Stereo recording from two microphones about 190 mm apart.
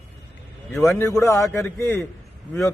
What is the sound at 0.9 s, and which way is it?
Speech, 15° left (ahead or behind).